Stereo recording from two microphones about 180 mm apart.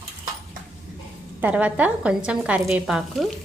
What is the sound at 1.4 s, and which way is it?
A woman's voice, 10° right (ahead or behind).